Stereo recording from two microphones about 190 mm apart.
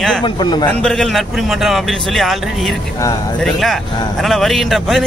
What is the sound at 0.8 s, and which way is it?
Speech, 5° left (ahead or behind).